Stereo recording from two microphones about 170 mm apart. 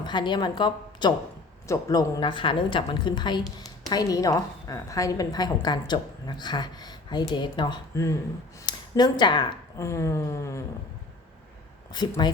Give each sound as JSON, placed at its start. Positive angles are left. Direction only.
{"t": 0.0, "sound": "a woman's voice", "side_deg": 25}
{"t": 11.9, "sound": "speech", "side_deg": 25}